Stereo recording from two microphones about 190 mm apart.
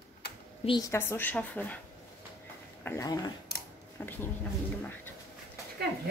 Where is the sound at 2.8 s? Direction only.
15° left (ahead or behind).